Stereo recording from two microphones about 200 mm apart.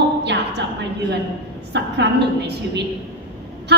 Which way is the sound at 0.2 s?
55° right (ahead or behind).